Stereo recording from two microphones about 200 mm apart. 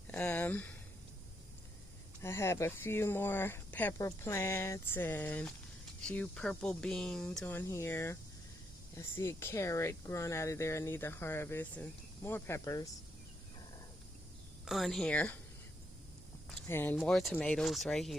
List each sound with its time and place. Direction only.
0.1 s speech: 10° left (ahead or behind)
2.2 s speech: 15° left (ahead or behind)
14.6 s speech: centre (ahead or behind)
16.6 s speech: 10° left (ahead or behind)